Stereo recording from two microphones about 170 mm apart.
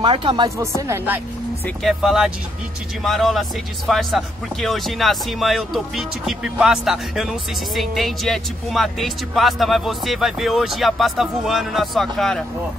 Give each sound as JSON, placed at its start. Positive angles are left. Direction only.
{"t": 0.0, "sound": "speech", "side_deg": -30}
{"t": 0.6, "sound": "speech", "side_deg": -15}
{"t": 1.8, "sound": "speech", "side_deg": 0}